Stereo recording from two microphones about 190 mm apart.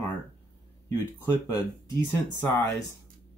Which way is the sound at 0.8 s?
20° left (ahead or behind).